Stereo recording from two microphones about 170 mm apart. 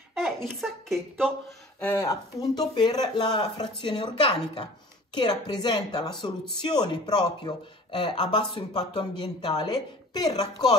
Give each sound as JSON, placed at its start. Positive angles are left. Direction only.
{"t": 0.1, "sound": "speech", "side_deg": 0}
{"t": 1.8, "sound": "speech", "side_deg": 15}